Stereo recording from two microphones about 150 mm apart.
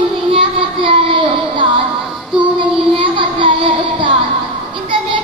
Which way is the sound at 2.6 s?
35° right (ahead or behind).